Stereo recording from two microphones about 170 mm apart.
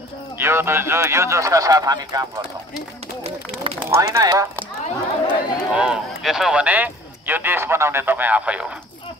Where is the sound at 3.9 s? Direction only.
20° right (ahead or behind).